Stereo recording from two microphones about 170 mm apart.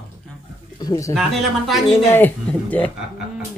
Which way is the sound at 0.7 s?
20° left (ahead or behind).